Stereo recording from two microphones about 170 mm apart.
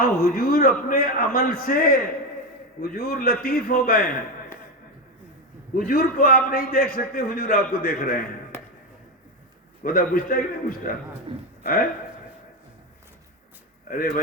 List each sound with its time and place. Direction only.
0.0 s a man's voice: 60° left (ahead or behind)
5.7 s a man's voice: 60° left (ahead or behind)
9.8 s a man's voice: 60° left (ahead or behind)
11.3 s a man's voice: 35° right (ahead or behind)
11.6 s speech: 55° left (ahead or behind)